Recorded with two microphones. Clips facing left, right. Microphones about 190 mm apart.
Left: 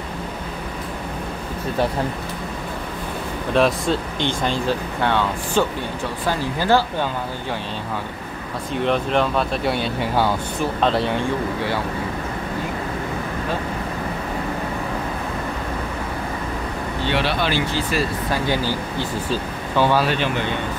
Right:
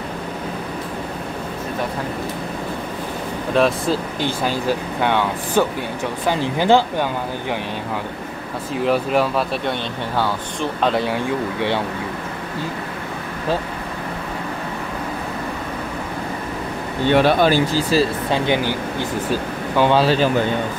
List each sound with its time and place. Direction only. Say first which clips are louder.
3.5 s speech: right 1 dB; centre (ahead or behind); by 7.1 s 20° right (ahead or behind)
8.7 s speech: right 2 dB; 5° right (ahead or behind)
10.1 s speech: left 1 dB; 10° left (ahead or behind)
10.8 s speech: right 1 dB; centre (ahead or behind)
17.0 s speech: right 8 dB; 50° right (ahead or behind)
18.3 s speech: right 3 dB; 20° right (ahead or behind)
20.0 s speech: right 5 dB; 35° right (ahead or behind)